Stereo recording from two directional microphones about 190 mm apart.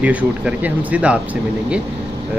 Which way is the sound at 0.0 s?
5° right (ahead or behind).